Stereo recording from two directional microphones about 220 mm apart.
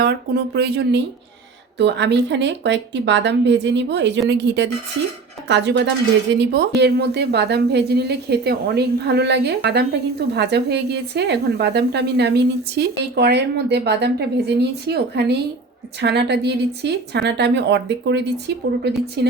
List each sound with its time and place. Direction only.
0.0 s a woman's voice: 45° right (ahead or behind)